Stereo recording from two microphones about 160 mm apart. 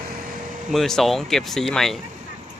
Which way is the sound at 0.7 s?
Centre (ahead or behind).